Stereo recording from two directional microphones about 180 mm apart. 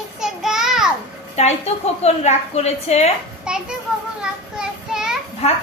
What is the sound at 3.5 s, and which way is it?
Speech, 5° right (ahead or behind).